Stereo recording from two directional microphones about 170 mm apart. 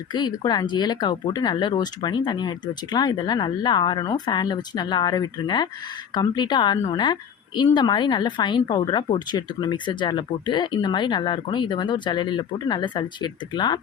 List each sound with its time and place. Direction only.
0.1 s a woman's voice: 25° left (ahead or behind)